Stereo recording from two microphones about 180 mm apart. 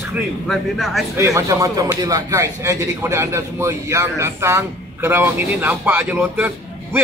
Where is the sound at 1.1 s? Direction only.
15° right (ahead or behind).